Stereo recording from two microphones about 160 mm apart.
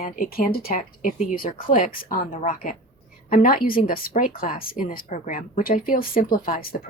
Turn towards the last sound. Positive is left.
turn(degrees=60)  # may be behind; listen again after turning